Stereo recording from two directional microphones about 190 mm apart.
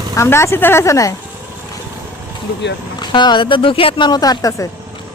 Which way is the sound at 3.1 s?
25° left (ahead or behind).